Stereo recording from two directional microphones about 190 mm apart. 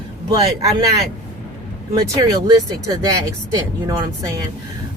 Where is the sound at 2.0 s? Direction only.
20° right (ahead or behind).